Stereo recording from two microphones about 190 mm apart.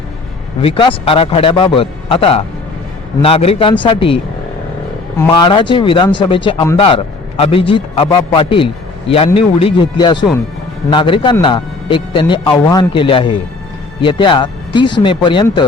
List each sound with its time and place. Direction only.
0.6 s a man's voice: 30° left (ahead or behind)
5.3 s a man's voice: 25° left (ahead or behind)